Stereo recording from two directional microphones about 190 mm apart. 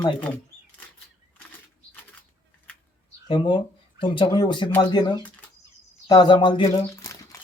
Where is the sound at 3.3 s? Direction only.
25° left (ahead or behind).